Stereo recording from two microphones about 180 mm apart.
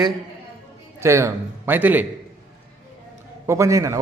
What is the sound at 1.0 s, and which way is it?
A man's voice, 15° right (ahead or behind).